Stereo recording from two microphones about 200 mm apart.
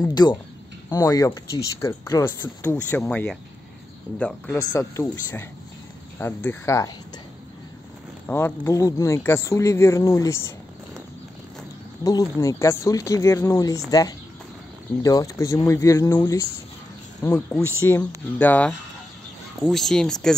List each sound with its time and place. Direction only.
0.0 s speech: 20° left (ahead or behind)
8.3 s speech: 10° left (ahead or behind)
12.0 s speech: 20° left (ahead or behind)